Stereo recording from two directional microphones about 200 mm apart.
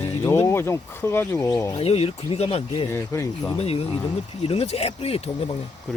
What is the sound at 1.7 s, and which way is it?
Speech, 30° left (ahead or behind).